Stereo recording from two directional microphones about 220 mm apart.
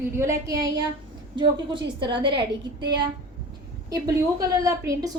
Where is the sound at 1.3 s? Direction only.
20° right (ahead or behind).